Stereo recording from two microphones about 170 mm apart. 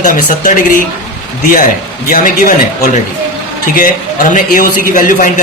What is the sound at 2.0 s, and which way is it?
Speech, 55° left (ahead or behind).